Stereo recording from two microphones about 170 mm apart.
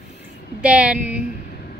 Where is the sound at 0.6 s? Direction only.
5° right (ahead or behind).